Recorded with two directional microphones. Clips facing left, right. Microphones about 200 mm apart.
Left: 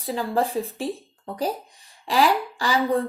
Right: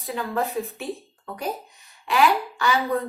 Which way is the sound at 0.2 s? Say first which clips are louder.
Left 2 dB; 30° left (ahead or behind).